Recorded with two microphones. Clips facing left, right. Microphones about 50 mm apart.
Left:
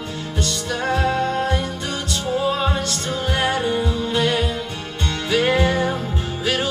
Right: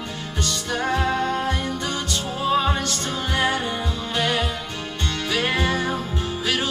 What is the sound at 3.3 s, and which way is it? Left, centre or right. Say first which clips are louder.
Music: left 2 dB; centre.